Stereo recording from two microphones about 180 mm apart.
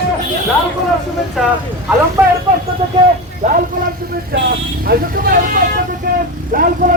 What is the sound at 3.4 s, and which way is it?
Vehicle, 40° right (ahead or behind).